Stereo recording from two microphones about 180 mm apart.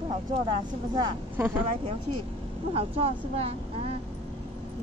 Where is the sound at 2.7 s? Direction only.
35° right (ahead or behind).